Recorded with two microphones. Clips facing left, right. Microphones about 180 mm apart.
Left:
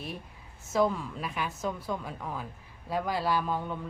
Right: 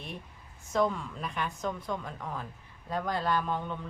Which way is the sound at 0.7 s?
5° left (ahead or behind).